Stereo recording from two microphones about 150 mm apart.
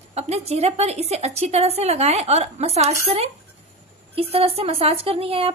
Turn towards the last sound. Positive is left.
turn(degrees=-40)  # may be behind; listen again after turning